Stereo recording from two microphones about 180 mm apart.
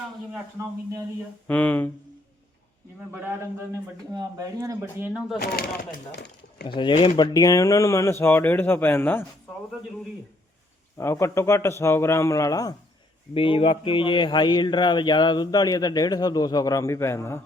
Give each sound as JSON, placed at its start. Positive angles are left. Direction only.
{"t": 1.5, "sound": "speech", "side_deg": 10}
{"t": 3.7, "sound": "speech", "side_deg": -20}
{"t": 5.4, "sound": "speech", "side_deg": 60}
{"t": 6.7, "sound": "speech", "side_deg": 25}
{"t": 10.9, "sound": "speech", "side_deg": 15}
{"t": 13.3, "sound": "speech", "side_deg": 30}